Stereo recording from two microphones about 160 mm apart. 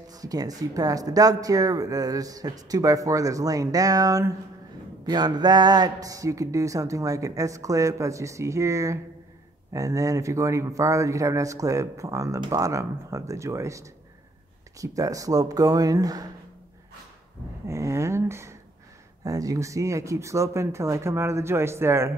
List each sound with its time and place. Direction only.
0.1 s speech: 25° right (ahead or behind)
17.6 s a sound: 20° right (ahead or behind)
19.2 s speech: 20° right (ahead or behind)